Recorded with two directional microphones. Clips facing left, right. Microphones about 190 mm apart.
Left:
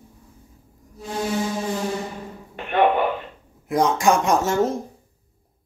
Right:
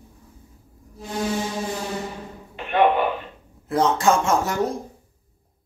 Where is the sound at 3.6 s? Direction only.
15° left (ahead or behind).